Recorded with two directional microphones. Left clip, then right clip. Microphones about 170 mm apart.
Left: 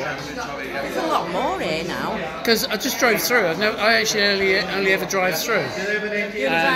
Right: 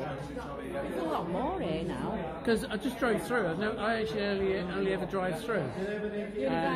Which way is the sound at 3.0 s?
15° left (ahead or behind).